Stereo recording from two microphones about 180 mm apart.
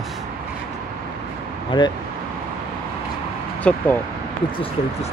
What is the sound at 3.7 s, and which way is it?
Speech, 5° left (ahead or behind).